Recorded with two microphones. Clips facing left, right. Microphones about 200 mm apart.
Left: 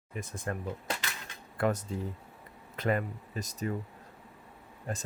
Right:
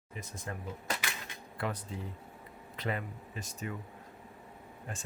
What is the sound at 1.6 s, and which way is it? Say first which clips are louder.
Speech: left 7 dB; 45° left (ahead or behind).